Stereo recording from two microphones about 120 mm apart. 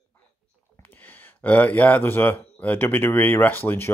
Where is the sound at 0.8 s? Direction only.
15° left (ahead or behind).